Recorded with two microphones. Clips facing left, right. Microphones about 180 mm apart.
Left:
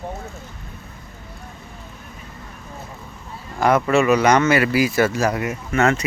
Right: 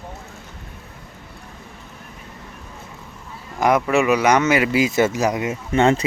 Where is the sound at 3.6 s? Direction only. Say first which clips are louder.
Left 1 dB; 15° right (ahead or behind).